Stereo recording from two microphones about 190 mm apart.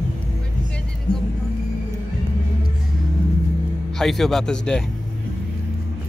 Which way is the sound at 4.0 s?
Centre (ahead or behind).